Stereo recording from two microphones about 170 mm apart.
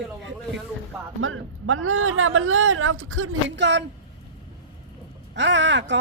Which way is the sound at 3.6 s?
90° right.